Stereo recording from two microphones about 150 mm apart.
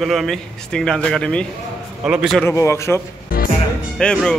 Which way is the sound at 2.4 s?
20° left (ahead or behind).